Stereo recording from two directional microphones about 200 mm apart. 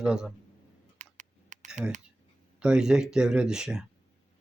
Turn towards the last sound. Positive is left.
turn(degrees=-5)  # may be behind; listen again after turning